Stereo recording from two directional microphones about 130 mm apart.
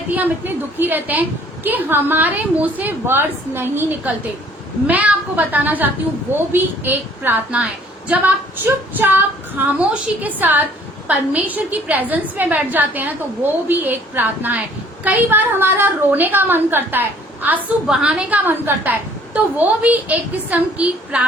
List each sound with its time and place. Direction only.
0.1 s a woman's voice: 15° right (ahead or behind)